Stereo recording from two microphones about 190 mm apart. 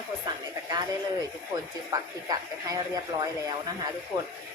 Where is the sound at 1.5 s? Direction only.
20° right (ahead or behind).